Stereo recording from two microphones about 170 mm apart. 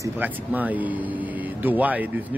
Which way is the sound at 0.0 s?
10° right (ahead or behind).